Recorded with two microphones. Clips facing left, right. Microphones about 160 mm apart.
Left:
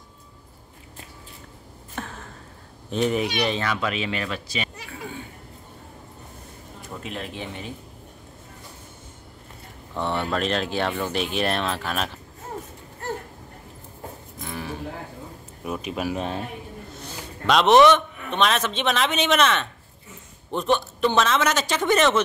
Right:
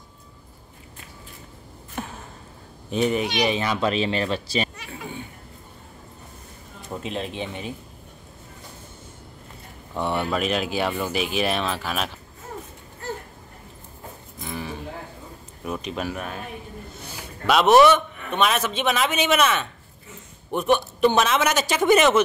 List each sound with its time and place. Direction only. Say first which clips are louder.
2.0 s a sound: right 1 dB; 15° right (ahead or behind)
2.9 s speech: right 1 dB; centre (ahead or behind)
3.4 s speech: right 2 dB; 15° right (ahead or behind)
3.7 s speech: right 4 dB; 30° right (ahead or behind)
6.8 s speech: right 4 dB; 25° right (ahead or behind)
9.9 s speech: right 1 dB; 10° right (ahead or behind)
14.4 s a sound: even; centre (ahead or behind)
15.6 s speech: left 1 dB; 5° left (ahead or behind)
16.2 s a man's voice: left 4 dB; 25° left (ahead or behind)
17.0 s a man's voice: even; 5° right (ahead or behind)